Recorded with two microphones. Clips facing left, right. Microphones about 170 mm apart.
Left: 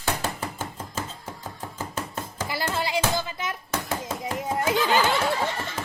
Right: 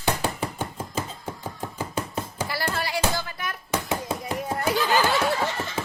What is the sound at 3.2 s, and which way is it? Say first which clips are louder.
Music: left 2 dB; 20° left (ahead or behind).